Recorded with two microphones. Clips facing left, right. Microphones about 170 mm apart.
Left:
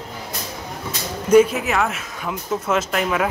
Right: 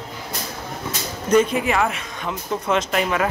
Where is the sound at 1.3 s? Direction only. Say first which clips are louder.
Left 3 dB; 5° left (ahead or behind).